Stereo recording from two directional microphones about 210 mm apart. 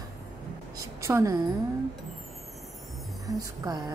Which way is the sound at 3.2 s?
20° right (ahead or behind).